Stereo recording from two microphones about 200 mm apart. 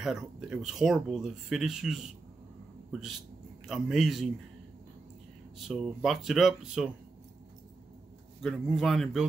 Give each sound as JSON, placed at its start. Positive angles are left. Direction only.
{"t": 0.0, "sound": "speech", "side_deg": 0}
{"t": 3.6, "sound": "speech", "side_deg": 0}
{"t": 5.7, "sound": "speech", "side_deg": 0}
{"t": 8.4, "sound": "speech", "side_deg": 0}